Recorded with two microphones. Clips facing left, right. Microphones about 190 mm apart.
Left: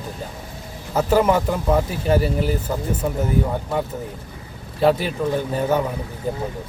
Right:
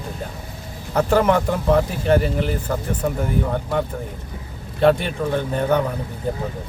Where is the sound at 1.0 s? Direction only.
5° left (ahead or behind).